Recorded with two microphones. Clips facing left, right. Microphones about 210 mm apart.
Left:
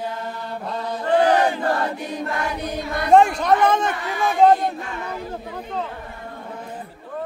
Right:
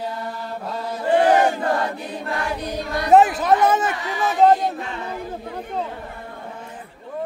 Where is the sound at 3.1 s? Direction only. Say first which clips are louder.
Even; 5° right (ahead or behind).